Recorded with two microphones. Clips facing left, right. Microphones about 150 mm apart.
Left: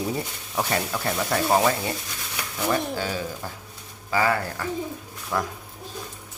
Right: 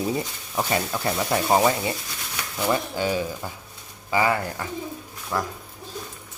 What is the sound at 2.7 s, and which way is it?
Speech, 15° right (ahead or behind).